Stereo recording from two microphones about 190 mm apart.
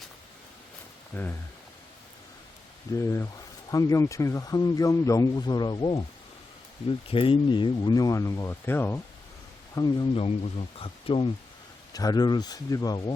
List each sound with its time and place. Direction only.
1.1 s speech: 10° left (ahead or behind)
2.9 s speech: 15° left (ahead or behind)
7.1 s speech: 30° left (ahead or behind)
10.2 s speech: 35° left (ahead or behind)